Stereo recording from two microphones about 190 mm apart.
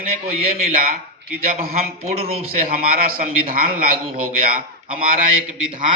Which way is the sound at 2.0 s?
30° right (ahead or behind).